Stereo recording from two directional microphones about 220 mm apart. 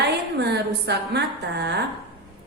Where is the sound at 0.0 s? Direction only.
50° right (ahead or behind).